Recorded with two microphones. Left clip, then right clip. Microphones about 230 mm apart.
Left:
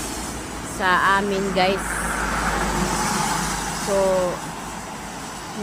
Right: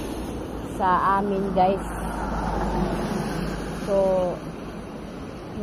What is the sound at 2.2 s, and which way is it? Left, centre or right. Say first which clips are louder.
Vehicle: left 3 dB; centre.